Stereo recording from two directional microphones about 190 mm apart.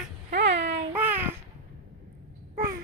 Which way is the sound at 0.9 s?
10° right (ahead or behind).